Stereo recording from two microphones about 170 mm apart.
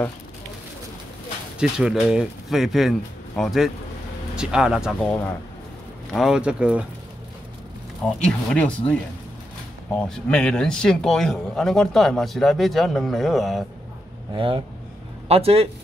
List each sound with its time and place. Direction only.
1.6 s speech: 5° right (ahead or behind)
6.1 s speech: 5° right (ahead or behind)
8.0 s speech: 5° left (ahead or behind)
9.9 s speech: 5° left (ahead or behind)
14.3 s a man's voice: 30° right (ahead or behind)